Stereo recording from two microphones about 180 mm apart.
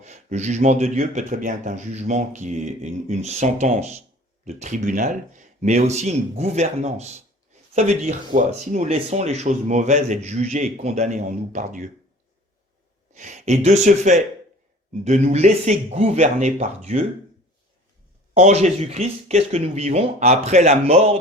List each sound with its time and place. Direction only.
0.0 s speech: 40° right (ahead or behind)
13.1 s speech: 40° right (ahead or behind)
18.3 s speech: 40° right (ahead or behind)